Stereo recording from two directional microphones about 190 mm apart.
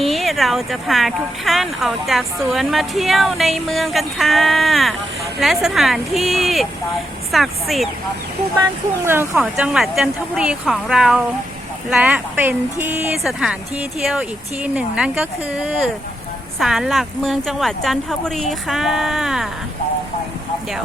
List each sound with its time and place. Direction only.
0.0 s speech: centre (ahead or behind)
9.0 s speech: 15° right (ahead or behind)
9.4 s speech: 5° right (ahead or behind)